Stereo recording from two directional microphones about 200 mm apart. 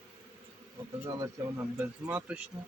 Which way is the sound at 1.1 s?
20° right (ahead or behind).